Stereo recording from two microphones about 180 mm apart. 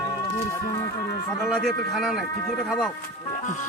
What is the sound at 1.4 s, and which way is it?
Speech, centre (ahead or behind).